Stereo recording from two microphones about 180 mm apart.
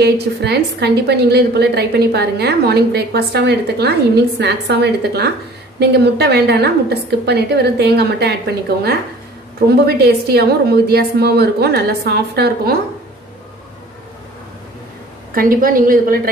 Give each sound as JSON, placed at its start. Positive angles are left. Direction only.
{"t": 0.0, "sound": "a woman's voice", "side_deg": -65}
{"t": 15.3, "sound": "a woman's voice", "side_deg": -50}